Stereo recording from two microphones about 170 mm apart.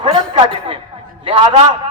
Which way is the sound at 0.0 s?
30° right (ahead or behind).